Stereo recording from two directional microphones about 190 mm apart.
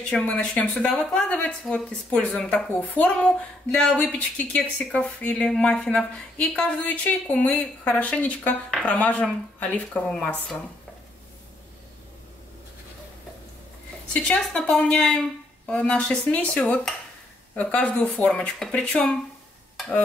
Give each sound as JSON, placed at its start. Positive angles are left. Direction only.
{"t": 0.1, "sound": "a woman's voice", "side_deg": 5}
{"t": 14.1, "sound": "a woman's voice", "side_deg": 5}